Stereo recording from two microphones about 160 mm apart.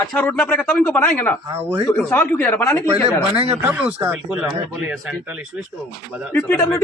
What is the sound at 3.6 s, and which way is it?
Speech, 10° right (ahead or behind).